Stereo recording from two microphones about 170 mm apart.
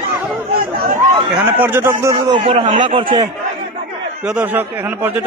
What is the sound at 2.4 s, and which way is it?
Speech, 40° right (ahead or behind).